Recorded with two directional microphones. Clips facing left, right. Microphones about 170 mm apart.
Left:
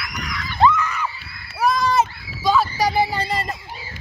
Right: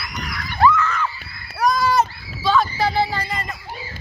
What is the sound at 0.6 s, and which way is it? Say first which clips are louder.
Screaming: right 1 dB; 15° left (ahead or behind).